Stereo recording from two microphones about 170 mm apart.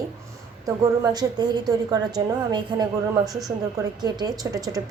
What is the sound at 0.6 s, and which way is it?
A woman's voice, 25° right (ahead or behind).